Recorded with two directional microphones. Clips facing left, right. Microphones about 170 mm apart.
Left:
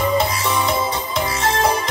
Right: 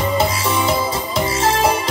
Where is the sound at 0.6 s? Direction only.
5° right (ahead or behind).